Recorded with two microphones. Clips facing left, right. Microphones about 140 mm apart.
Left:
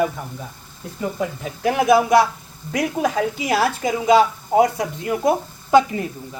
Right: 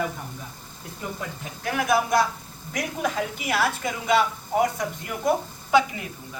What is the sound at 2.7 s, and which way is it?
Speech, 80° left.